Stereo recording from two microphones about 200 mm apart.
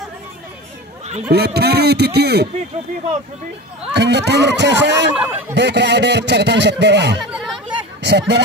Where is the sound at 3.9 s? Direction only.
60° right (ahead or behind).